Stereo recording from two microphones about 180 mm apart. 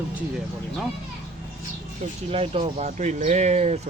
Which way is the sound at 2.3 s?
35° right (ahead or behind).